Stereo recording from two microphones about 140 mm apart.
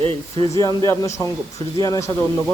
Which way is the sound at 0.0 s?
40° right (ahead or behind).